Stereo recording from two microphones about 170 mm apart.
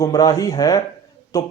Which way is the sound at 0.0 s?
20° left (ahead or behind).